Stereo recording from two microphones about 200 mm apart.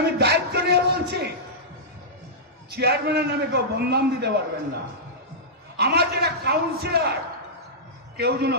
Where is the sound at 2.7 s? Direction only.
55° right (ahead or behind).